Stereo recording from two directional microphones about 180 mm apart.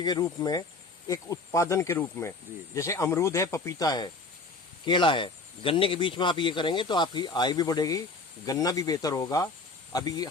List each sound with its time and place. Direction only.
0.0 s speech: 20° left (ahead or behind)